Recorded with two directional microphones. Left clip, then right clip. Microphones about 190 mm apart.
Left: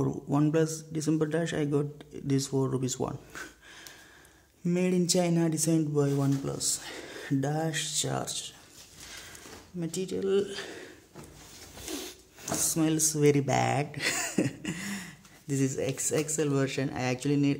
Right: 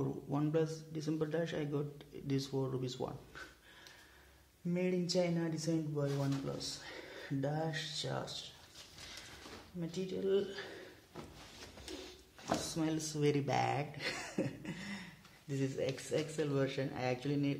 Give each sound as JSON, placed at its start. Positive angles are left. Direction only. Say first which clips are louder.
{"t": 0.0, "sound": "a man's voice", "louder": "left 10 dB", "side_deg": 35}
{"t": 4.6, "sound": "speech", "louder": "left 8 dB", "side_deg": 55}
{"t": 9.8, "sound": "speech", "louder": "left 8 dB", "side_deg": 50}
{"t": 12.6, "sound": "a man's voice", "louder": "left 10 dB", "side_deg": 45}
{"t": 15.8, "sound": "a man's voice", "louder": "left 7 dB", "side_deg": 35}